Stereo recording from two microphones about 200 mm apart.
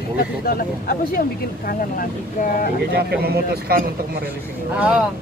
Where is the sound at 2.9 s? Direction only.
55° right (ahead or behind).